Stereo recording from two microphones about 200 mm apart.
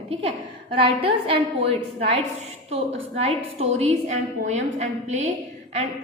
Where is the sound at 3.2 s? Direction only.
30° right (ahead or behind).